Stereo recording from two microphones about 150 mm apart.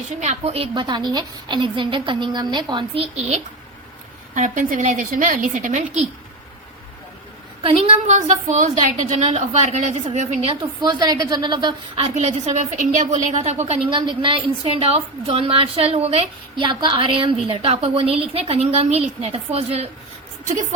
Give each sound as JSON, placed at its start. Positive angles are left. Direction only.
{"t": 0.2, "sound": "a woman's voice", "side_deg": -45}
{"t": 4.4, "sound": "a woman's voice", "side_deg": -60}
{"t": 7.6, "sound": "a woman's voice", "side_deg": -40}
{"t": 8.0, "sound": "a woman's voice", "side_deg": -50}
{"t": 10.5, "sound": "a woman's voice", "side_deg": -30}
{"t": 12.0, "sound": "a woman's voice", "side_deg": -50}